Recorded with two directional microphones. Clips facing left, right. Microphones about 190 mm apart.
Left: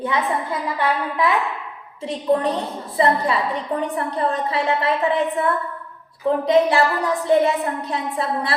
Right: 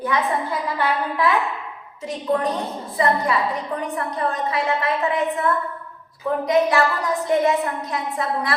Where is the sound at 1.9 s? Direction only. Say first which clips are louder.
Left 3 dB; 30° left (ahead or behind).